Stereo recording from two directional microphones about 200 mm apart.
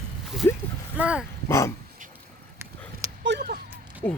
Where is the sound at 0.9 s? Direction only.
5° right (ahead or behind).